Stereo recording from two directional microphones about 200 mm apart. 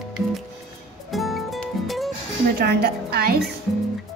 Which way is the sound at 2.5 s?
50° right (ahead or behind).